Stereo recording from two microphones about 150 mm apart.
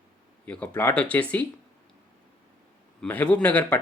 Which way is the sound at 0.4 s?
10° left (ahead or behind).